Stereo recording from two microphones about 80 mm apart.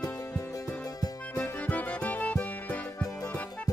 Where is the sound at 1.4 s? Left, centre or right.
Left.